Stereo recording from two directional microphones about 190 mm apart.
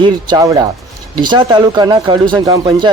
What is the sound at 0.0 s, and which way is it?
Speech, 20° right (ahead or behind).